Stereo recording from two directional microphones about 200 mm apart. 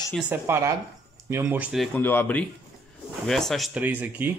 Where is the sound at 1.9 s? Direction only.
10° left (ahead or behind); by 4.3 s 10° right (ahead or behind).